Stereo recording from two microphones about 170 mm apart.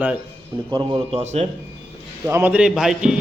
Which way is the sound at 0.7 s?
30° right (ahead or behind).